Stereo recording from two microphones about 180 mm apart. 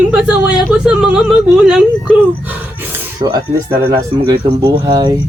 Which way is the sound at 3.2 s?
20° right (ahead or behind).